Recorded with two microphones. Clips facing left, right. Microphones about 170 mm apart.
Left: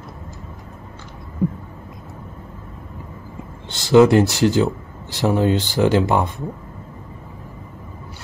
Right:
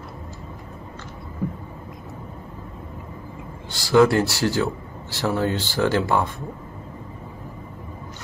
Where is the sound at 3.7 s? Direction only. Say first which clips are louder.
Left 4 dB; 20° left (ahead or behind).